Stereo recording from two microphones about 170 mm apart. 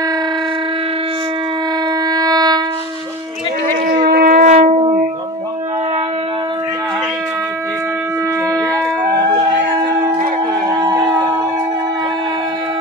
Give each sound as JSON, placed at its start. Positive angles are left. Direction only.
{"t": 2.0, "sound": "wind instrument", "side_deg": -20}
{"t": 3.9, "sound": "shofar", "side_deg": -60}
{"t": 4.6, "sound": "shofar", "side_deg": -30}